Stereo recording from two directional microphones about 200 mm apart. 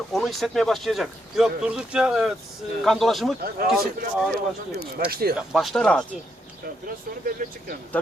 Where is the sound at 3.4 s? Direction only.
50° right (ahead or behind).